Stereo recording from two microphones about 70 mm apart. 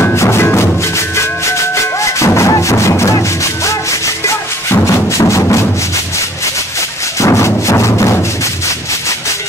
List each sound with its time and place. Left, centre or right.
0.0 s music: left
2.0 s music: left
4.9 s music: left
7.2 s music: left